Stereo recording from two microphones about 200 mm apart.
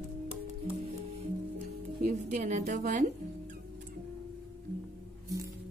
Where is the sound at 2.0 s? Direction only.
40° right (ahead or behind).